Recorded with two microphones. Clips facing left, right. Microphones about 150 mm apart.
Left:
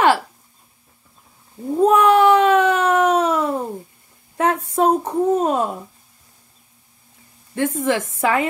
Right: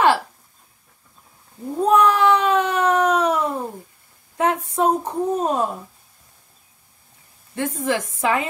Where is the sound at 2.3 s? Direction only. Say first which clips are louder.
Left 5 dB; 50° left (ahead or behind).